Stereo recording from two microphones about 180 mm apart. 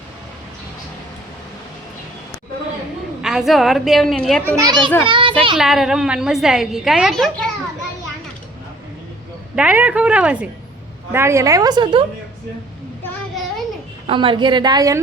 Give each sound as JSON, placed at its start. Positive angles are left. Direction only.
{"t": 3.2, "sound": "a woman's voice", "side_deg": -5}
{"t": 4.4, "sound": "a woman's voice", "side_deg": -20}
{"t": 5.0, "sound": "a sound", "side_deg": -30}
{"t": 5.5, "sound": "a woman's voice", "side_deg": 0}
{"t": 9.6, "sound": "a woman's voice", "side_deg": -5}
{"t": 13.3, "sound": "child singing", "side_deg": 0}
{"t": 14.1, "sound": "a woman's voice", "side_deg": -30}